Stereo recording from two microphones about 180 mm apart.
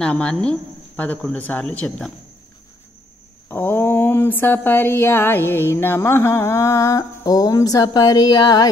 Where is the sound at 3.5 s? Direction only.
10° left (ahead or behind).